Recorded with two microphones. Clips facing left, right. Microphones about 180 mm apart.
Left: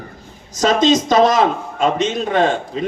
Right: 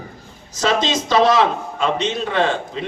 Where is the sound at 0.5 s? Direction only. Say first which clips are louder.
Left 5 dB; 45° left (ahead or behind).